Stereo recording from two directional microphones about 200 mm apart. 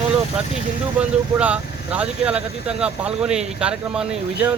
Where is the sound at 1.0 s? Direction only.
5° right (ahead or behind).